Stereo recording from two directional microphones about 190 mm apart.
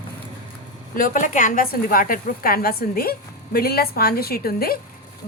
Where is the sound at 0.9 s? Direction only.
45° left (ahead or behind).